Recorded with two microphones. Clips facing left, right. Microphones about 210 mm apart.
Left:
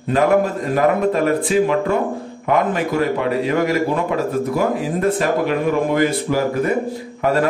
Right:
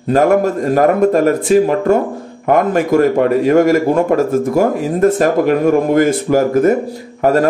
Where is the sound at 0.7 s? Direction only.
45° right (ahead or behind).